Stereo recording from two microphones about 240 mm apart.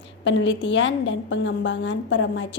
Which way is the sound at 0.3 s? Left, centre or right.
Left.